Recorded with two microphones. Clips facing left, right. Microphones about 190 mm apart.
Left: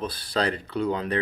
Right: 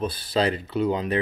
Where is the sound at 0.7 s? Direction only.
20° right (ahead or behind).